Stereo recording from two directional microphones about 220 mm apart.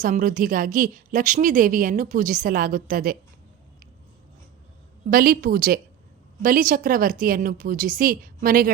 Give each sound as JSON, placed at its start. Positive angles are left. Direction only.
{"t": 0.0, "sound": "a woman's voice", "side_deg": -40}
{"t": 5.1, "sound": "a woman's voice", "side_deg": -40}